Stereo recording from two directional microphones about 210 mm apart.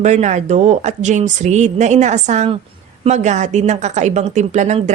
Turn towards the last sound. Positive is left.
turn(degrees=-35)  # may be behind; listen again after turning